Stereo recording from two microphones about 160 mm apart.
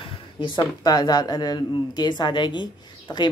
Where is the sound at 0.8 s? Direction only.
25° left (ahead or behind).